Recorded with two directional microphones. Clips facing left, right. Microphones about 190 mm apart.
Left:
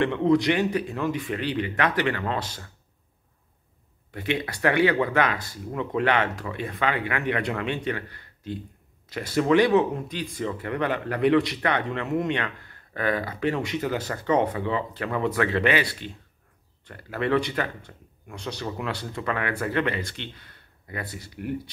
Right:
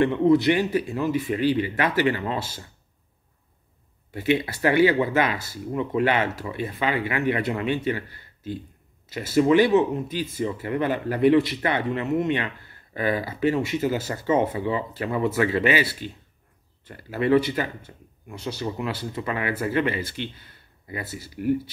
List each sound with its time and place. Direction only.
0.1 s speech: 5° right (ahead or behind)
4.1 s speech: 5° right (ahead or behind)
9.1 s speech: 5° right (ahead or behind)